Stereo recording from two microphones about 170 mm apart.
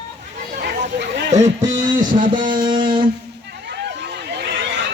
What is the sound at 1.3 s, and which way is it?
Music, 45° right (ahead or behind).